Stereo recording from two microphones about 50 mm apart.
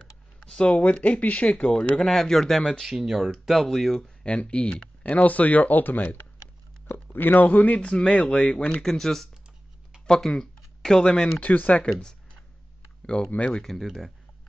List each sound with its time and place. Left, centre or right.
0.5 s speech: left
2.0 s speech: centre
4.2 s speech: left
5.0 s speech: left
8.8 s speech: centre
11.3 s speech: left
13.0 s speech: centre
13.7 s speech: centre